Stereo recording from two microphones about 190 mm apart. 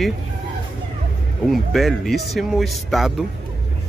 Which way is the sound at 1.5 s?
Centre (ahead or behind).